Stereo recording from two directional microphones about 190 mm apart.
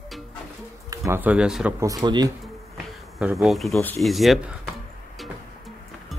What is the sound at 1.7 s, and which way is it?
Speech, 20° right (ahead or behind).